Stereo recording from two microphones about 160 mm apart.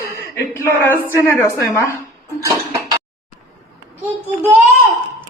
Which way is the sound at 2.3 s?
20° right (ahead or behind).